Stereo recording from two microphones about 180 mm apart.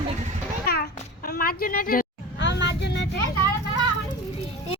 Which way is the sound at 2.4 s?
75° left (ahead or behind).